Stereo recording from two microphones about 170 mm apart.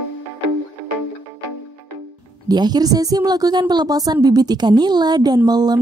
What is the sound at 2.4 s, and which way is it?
A woman's voice, 25° right (ahead or behind).